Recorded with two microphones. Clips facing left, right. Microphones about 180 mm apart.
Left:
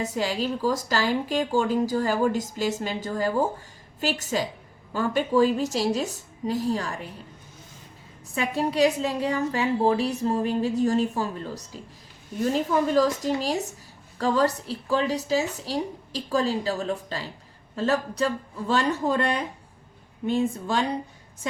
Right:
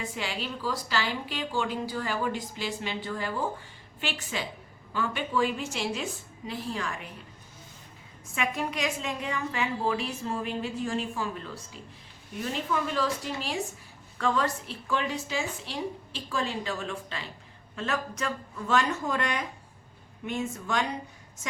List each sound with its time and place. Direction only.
0.0 s a woman's voice: 40° left (ahead or behind)
8.4 s a woman's voice: 35° left (ahead or behind)